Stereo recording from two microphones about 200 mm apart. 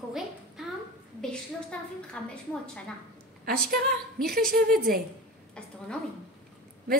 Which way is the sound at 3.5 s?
50° right (ahead or behind).